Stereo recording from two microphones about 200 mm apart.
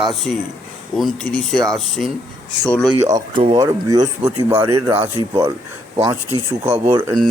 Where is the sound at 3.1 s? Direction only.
25° right (ahead or behind).